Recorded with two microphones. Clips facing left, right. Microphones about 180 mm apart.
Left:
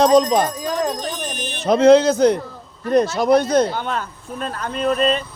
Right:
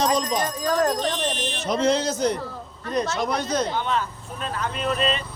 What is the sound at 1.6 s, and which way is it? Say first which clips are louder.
A man's voice: left 10 dB; 60° left (ahead or behind).